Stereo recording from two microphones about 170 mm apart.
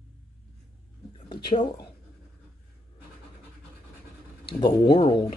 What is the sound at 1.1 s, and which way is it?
Speech, 30° left (ahead or behind).